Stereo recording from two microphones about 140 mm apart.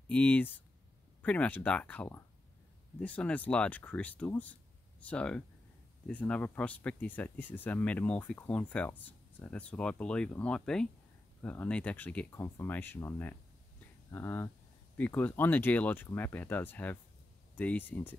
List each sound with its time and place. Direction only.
0.1 s speech: 10° left (ahead or behind)